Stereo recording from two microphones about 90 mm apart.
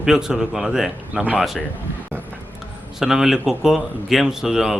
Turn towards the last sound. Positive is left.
turn(degrees=-5)  # may be behind; listen again after turning